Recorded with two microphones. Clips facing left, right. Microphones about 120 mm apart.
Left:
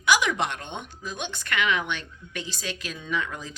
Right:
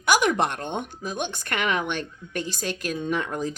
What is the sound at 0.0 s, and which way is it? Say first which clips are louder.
Speech: right 3 dB; 50° right (ahead or behind).